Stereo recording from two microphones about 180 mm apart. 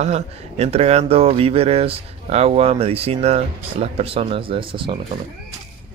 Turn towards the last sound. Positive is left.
turn(degrees=-30)  # may be behind; listen again after turning